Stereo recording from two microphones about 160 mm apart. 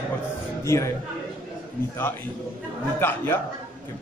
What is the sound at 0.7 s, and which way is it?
Speech, 20° left (ahead or behind).